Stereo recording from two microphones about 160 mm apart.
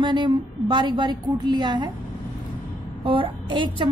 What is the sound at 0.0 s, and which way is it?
A woman's voice, 30° right (ahead or behind).